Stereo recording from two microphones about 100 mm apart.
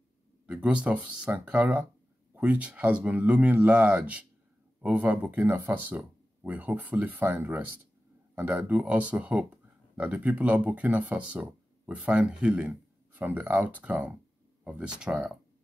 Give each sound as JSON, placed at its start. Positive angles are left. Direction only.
{"t": 0.5, "sound": "speech", "side_deg": -15}